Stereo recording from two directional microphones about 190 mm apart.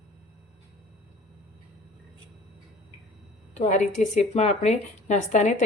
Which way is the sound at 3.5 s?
40° left (ahead or behind).